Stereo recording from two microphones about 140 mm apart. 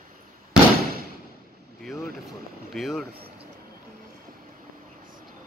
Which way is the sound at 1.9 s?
Centre (ahead or behind).